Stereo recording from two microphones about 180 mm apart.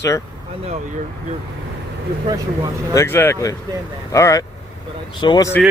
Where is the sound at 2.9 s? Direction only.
15° left (ahead or behind).